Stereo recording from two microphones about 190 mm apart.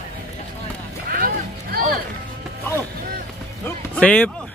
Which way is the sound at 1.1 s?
50° right (ahead or behind).